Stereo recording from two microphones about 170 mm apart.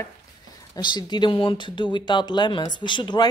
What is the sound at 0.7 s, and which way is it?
Speech, 25° left (ahead or behind).